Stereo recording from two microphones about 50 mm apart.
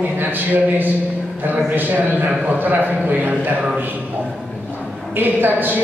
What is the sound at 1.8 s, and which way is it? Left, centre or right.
Speech, right.